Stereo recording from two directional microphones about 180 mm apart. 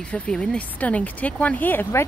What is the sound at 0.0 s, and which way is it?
Speech, 5° left (ahead or behind).